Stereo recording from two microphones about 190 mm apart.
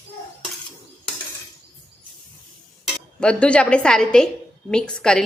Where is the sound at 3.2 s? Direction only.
5° left (ahead or behind).